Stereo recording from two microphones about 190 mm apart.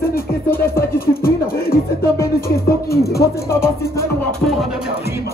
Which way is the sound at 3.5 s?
15° left (ahead or behind).